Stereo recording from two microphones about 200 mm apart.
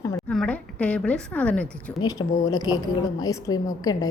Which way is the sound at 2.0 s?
20° left (ahead or behind).